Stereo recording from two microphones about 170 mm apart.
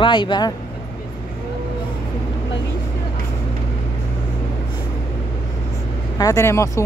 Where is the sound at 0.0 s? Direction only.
25° left (ahead or behind).